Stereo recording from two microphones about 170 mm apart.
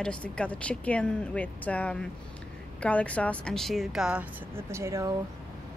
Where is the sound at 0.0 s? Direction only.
5° left (ahead or behind); by 5.1 s 15° right (ahead or behind).